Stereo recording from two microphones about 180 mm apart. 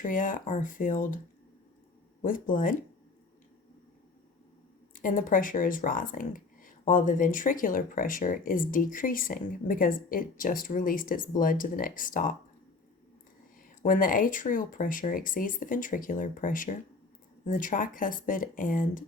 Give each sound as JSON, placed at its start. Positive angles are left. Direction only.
{"t": 0.0, "sound": "speech", "side_deg": 50}
{"t": 2.2, "sound": "speech", "side_deg": 50}
{"t": 4.9, "sound": "speech", "side_deg": 50}
{"t": 13.8, "sound": "speech", "side_deg": 50}